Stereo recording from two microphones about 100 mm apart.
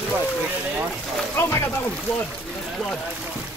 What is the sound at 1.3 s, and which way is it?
Speech, 25° left (ahead or behind).